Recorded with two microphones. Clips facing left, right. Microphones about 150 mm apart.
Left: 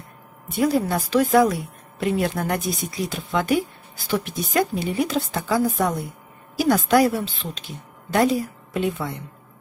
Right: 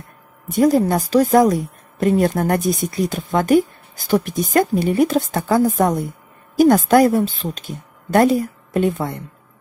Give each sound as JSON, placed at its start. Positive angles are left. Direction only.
{"t": 0.5, "sound": "a woman's voice", "side_deg": -45}